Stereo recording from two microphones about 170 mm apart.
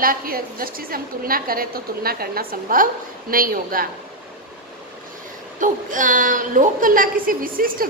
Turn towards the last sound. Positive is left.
turn(degrees=-55)  # may be behind; listen again after turning